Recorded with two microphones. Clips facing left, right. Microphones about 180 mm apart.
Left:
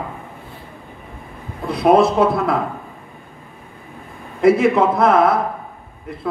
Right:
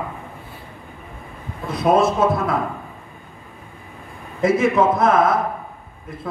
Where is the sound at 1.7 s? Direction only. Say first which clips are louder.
Left 3 dB; 60° left (ahead or behind).